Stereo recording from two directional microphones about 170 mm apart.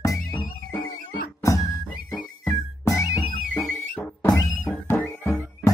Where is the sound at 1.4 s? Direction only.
20° left (ahead or behind).